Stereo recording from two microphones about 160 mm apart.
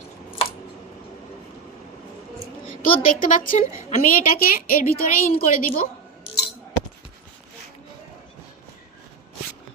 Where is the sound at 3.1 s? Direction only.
55° left (ahead or behind).